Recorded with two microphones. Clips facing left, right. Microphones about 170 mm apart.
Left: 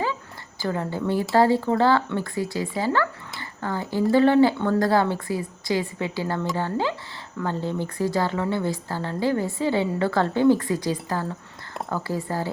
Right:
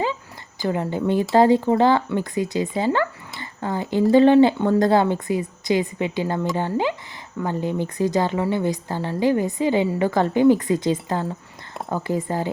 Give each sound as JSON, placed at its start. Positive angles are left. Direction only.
{"t": 0.6, "sound": "a woman's voice", "side_deg": -20}